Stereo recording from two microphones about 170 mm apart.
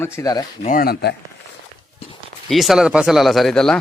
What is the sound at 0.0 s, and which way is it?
Speech, 15° left (ahead or behind).